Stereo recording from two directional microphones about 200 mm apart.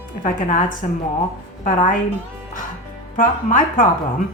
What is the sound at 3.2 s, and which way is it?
Speech, 40° left (ahead or behind).